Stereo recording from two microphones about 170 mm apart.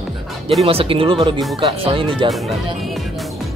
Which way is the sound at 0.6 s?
35° right (ahead or behind).